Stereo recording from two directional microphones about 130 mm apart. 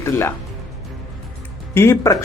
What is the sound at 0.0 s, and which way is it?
Speech, 20° left (ahead or behind).